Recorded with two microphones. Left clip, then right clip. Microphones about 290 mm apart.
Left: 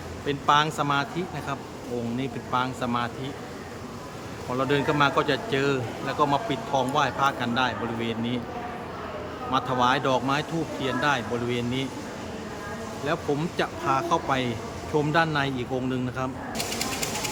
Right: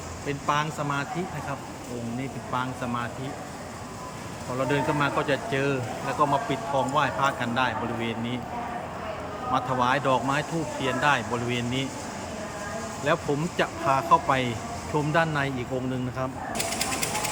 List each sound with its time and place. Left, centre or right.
0.3 s speech: centre
2.5 s speech: centre
4.7 s speech: centre
9.5 s speech: centre
13.1 s speech: centre